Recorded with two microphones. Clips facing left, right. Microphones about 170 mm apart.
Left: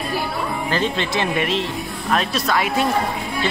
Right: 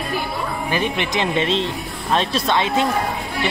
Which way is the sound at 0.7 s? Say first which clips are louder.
Right 1 dB; 15° right (ahead or behind).